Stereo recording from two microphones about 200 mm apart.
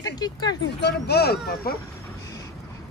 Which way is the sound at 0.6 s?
55° left (ahead or behind).